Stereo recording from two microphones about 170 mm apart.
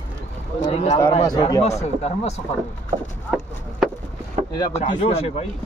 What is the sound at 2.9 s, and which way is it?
Speech, 30° right (ahead or behind).